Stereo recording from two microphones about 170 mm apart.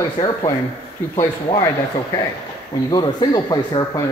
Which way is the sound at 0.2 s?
40° left (ahead or behind).